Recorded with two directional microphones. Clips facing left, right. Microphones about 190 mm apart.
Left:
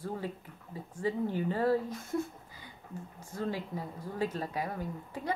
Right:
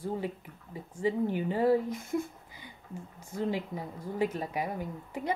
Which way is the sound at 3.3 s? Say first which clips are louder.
Right 3 dB; 20° right (ahead or behind).